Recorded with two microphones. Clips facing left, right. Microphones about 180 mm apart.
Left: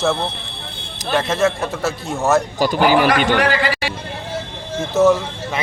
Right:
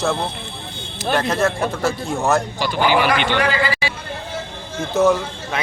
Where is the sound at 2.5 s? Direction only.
40° left (ahead or behind).